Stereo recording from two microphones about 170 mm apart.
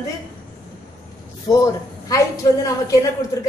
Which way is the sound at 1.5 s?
20° left (ahead or behind).